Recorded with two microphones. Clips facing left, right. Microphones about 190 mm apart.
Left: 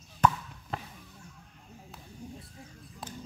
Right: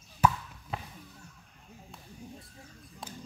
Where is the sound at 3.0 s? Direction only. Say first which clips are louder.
Left 2 dB; centre (ahead or behind).